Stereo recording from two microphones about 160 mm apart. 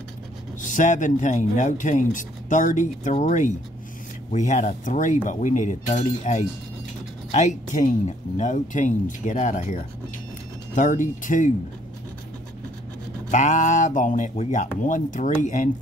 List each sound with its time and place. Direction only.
0.6 s speech: 55° left (ahead or behind)
13.3 s speech: 50° left (ahead or behind)